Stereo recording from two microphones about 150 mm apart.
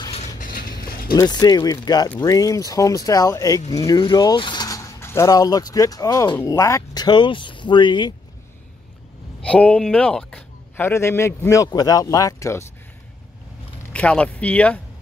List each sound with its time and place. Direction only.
0.4 s mechanisms: 70° left (ahead or behind)
0.8 s vehicle: 80° left
1.1 s speech: 25° left (ahead or behind)
9.4 s a man's voice: 10° left (ahead or behind)
13.9 s a man's voice: 10° left (ahead or behind)